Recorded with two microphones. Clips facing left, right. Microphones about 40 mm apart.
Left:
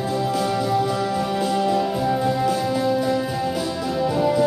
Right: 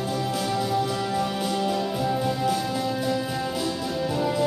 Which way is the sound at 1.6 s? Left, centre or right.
Centre.